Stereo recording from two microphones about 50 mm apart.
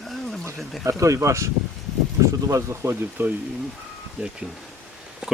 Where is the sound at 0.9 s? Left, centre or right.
Right.